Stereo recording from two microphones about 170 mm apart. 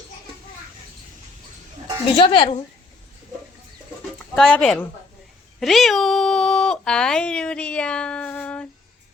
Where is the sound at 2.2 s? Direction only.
30° left (ahead or behind).